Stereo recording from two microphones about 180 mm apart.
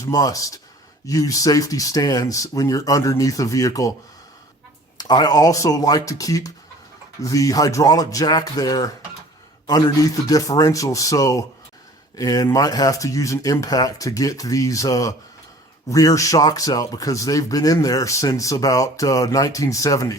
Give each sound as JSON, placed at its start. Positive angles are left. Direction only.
{"t": 0.0, "sound": "speech", "side_deg": 20}
{"t": 4.9, "sound": "speech", "side_deg": 20}